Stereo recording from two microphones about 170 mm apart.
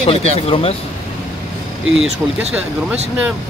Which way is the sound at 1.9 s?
5° right (ahead or behind).